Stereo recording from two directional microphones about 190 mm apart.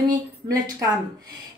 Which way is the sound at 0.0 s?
20° right (ahead or behind).